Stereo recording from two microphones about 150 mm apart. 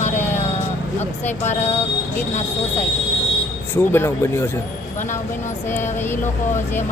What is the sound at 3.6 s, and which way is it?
Speech, 15° left (ahead or behind).